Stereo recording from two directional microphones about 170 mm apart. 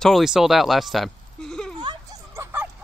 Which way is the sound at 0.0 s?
Centre (ahead or behind).